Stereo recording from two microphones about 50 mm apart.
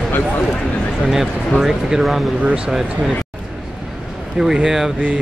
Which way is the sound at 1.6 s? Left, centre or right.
Centre.